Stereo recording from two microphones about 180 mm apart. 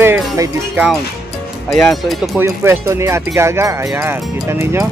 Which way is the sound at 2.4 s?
15° right (ahead or behind).